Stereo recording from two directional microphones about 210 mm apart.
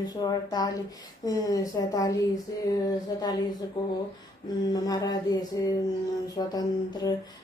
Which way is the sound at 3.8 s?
20° left (ahead or behind).